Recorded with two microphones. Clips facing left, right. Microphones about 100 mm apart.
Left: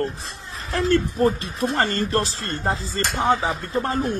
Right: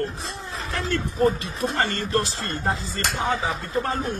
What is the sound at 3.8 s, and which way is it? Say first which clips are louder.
Speech: left 3 dB; 35° left (ahead or behind).